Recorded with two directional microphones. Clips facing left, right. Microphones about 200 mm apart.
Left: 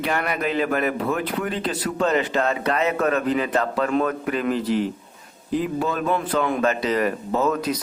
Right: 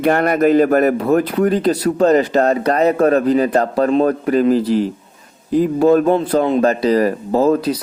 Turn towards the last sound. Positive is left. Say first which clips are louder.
# right 7 dB
turn(degrees=-35)  # may be behind; listen again after turning